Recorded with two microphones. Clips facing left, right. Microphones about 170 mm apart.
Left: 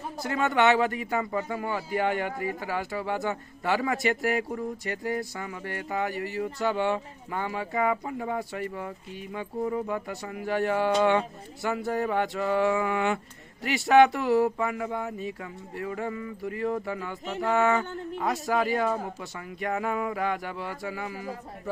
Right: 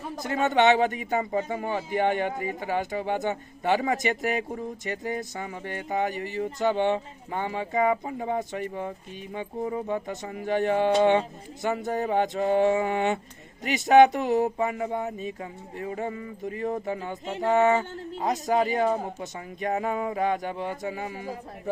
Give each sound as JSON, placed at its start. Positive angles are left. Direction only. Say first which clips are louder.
{"t": 0.2, "sound": "a man's voice", "louder": "right 2 dB", "side_deg": -20}